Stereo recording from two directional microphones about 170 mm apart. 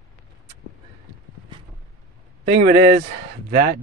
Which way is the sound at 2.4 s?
70° right (ahead or behind).